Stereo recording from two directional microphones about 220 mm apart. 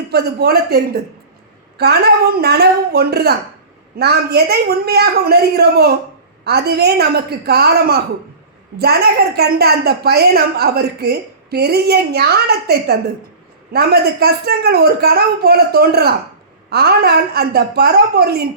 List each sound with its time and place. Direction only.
0.1 s a woman's voice: 45° right (ahead or behind)